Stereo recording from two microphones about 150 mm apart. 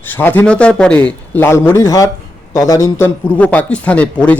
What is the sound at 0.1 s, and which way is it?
A man's voice, 15° left (ahead or behind).